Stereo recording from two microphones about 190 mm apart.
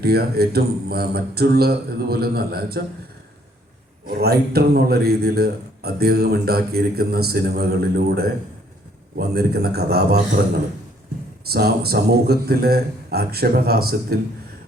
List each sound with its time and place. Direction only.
0.0 s a man's voice: 55° right (ahead or behind)
4.0 s a man's voice: 55° right (ahead or behind)
11.4 s a man's voice: 55° right (ahead or behind)